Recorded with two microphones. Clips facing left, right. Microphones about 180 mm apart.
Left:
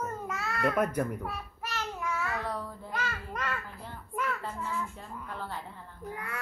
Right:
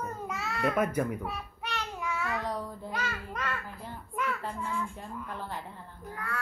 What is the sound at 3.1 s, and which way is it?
Babbling, 10° left (ahead or behind).